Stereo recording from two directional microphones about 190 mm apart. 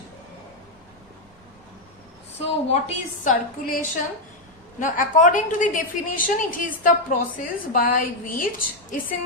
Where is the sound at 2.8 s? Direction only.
40° left (ahead or behind).